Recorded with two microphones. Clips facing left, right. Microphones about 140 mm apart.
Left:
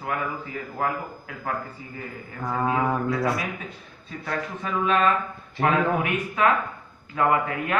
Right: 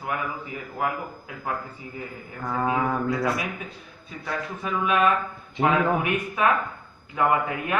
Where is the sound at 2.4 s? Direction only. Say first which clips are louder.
Left 1 dB; centre (ahead or behind).